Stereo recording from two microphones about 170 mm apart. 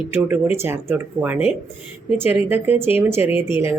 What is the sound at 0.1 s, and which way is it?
Speech, 10° right (ahead or behind).